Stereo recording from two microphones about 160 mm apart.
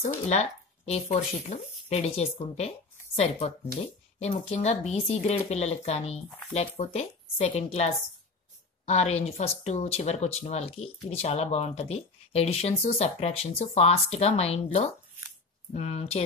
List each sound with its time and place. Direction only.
0.0 s speech: 45° left (ahead or behind)